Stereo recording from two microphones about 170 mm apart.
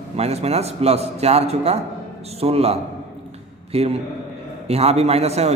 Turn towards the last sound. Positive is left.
turn(degrees=-40)  # may be behind; listen again after turning